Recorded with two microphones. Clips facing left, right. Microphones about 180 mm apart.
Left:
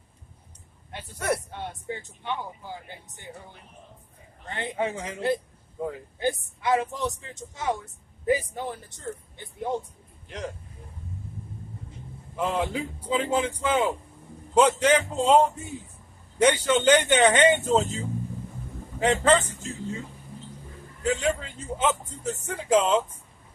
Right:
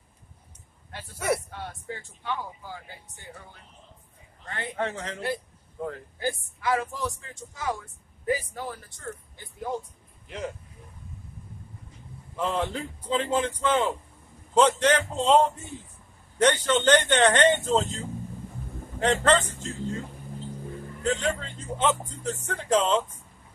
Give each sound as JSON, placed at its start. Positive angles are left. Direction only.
{"t": 1.1, "sound": "speech", "side_deg": -5}
{"t": 1.5, "sound": "speech", "side_deg": 20}
{"t": 4.5, "sound": "speech", "side_deg": 15}
{"t": 6.1, "sound": "speech", "side_deg": 25}
{"t": 10.2, "sound": "speech", "side_deg": 0}
{"t": 12.4, "sound": "speech", "side_deg": 10}
{"t": 21.0, "sound": "speech", "side_deg": 10}